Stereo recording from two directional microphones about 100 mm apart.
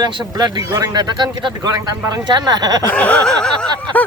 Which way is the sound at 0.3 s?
45° right (ahead or behind).